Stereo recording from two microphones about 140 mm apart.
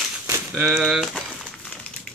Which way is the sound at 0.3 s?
15° right (ahead or behind).